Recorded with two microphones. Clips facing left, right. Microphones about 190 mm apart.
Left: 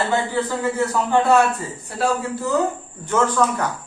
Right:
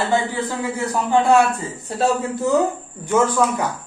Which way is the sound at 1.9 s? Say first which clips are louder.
Right 2 dB; 25° right (ahead or behind).